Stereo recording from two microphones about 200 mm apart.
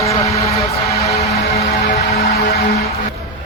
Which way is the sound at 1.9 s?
50° left (ahead or behind).